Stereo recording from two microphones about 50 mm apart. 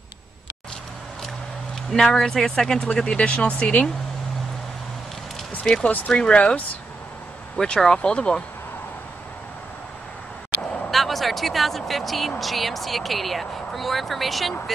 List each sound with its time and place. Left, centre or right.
1.9 s speech: centre; by 3.8 s left
5.9 s speech: left
7.6 s speech: centre
10.9 s speech: centre